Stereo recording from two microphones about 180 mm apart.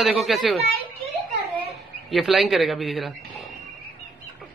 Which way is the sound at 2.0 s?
Centre (ahead or behind).